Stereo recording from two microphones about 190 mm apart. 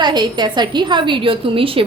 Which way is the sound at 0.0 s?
20° right (ahead or behind).